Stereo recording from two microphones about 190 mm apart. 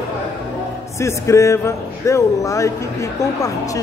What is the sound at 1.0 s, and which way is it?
Speech, 15° left (ahead or behind).